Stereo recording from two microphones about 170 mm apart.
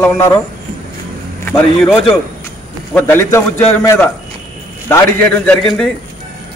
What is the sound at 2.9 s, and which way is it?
A man's voice, 15° left (ahead or behind).